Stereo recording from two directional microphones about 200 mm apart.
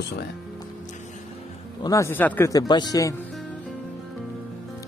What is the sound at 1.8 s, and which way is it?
A man's voice, 15° left (ahead or behind).